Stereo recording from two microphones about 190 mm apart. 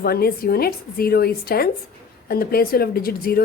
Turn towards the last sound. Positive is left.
turn(degrees=50)  # may be behind; listen again after turning